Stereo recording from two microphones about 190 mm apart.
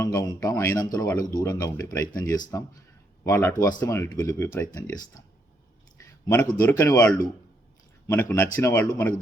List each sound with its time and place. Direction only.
0.0 s speech: 20° left (ahead or behind)